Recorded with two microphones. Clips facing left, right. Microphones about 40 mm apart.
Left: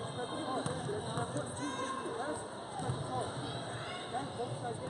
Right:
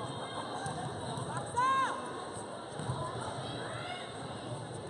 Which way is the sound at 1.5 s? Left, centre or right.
Right.